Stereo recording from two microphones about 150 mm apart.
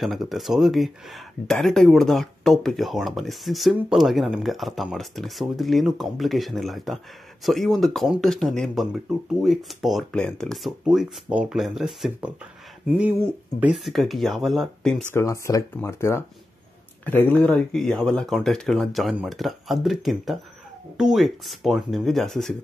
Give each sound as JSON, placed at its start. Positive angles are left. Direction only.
{"t": 0.0, "sound": "speech", "side_deg": 0}
{"t": 15.1, "sound": "speech", "side_deg": 20}